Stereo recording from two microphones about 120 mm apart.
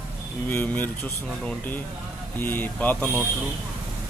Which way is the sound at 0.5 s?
15° left (ahead or behind).